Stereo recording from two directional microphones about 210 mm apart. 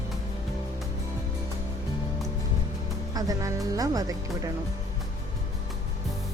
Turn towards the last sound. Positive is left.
turn(degrees=-15)  # may be behind; listen again after turning